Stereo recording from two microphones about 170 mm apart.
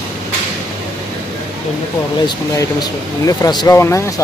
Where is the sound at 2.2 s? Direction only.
20° left (ahead or behind).